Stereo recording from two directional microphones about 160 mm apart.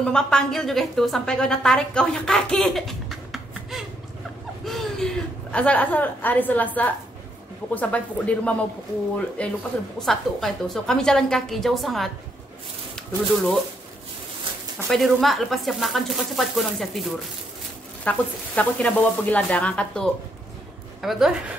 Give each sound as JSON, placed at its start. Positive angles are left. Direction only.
{"t": 0.0, "sound": "a woman's voice", "side_deg": 5}
{"t": 14.9, "sound": "speech", "side_deg": 0}